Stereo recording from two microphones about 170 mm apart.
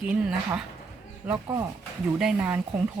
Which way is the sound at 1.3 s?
20° right (ahead or behind).